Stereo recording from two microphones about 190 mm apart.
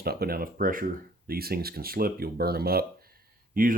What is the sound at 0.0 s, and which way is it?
Speech, 55° right (ahead or behind).